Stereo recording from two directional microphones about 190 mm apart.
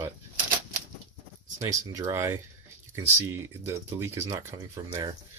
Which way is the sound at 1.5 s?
15° right (ahead or behind).